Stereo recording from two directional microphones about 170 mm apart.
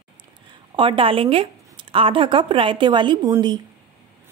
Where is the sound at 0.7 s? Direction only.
30° right (ahead or behind).